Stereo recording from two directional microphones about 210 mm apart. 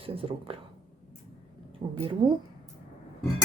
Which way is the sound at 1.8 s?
25° right (ahead or behind).